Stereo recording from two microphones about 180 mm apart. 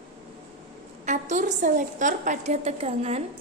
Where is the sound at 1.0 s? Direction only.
40° right (ahead or behind).